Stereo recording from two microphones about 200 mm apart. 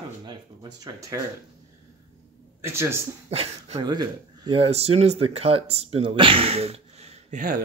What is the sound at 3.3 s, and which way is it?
Speech, 30° right (ahead or behind).